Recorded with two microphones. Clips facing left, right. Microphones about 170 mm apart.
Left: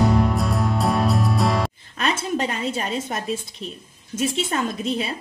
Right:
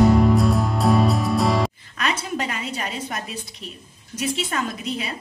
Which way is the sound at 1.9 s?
30° left (ahead or behind).